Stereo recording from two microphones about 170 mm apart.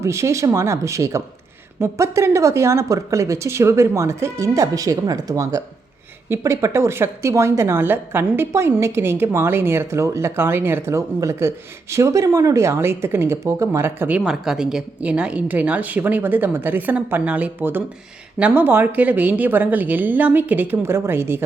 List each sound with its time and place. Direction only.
0.0 s a woman's voice: 15° right (ahead or behind)